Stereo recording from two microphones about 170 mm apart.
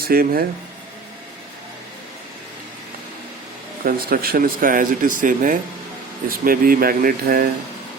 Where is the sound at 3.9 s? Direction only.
60° right (ahead or behind).